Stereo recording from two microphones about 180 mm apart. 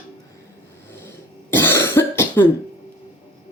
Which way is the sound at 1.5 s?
15° left (ahead or behind).